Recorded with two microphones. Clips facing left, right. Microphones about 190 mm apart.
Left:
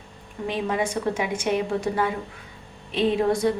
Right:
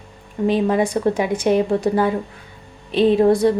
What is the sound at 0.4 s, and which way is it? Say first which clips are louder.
A woman's voice: right 8 dB; 35° right (ahead or behind).